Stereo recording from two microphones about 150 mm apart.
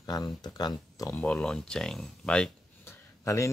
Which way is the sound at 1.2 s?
10° left (ahead or behind).